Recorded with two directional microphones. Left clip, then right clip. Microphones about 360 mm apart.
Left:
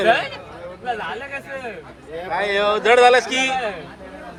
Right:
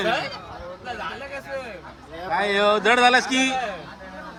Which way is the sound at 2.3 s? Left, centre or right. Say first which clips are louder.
Even; centre.